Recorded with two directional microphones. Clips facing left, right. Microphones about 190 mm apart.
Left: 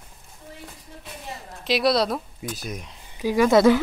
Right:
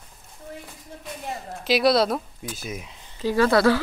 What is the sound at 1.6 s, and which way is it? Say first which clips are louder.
Speech: right 2 dB; centre (ahead or behind).